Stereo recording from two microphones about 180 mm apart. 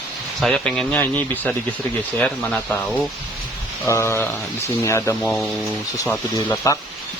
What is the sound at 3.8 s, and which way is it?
Speech, 15° left (ahead or behind).